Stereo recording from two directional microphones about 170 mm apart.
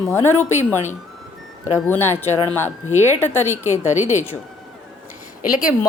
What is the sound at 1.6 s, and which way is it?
Speech, 15° left (ahead or behind).